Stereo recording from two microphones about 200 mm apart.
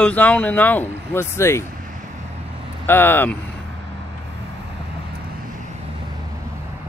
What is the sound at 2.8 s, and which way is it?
Speech, 10° left (ahead or behind).